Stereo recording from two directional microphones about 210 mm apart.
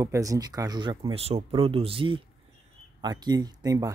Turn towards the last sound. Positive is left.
turn(degrees=-15)  # may be behind; listen again after turning